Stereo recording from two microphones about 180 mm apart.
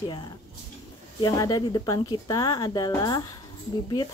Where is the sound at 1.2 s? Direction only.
20° left (ahead or behind).